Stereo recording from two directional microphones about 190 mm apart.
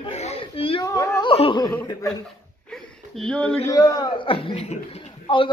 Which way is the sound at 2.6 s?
Centre (ahead or behind).